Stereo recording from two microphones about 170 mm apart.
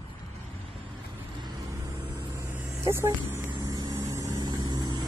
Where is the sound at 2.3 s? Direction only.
15° right (ahead or behind).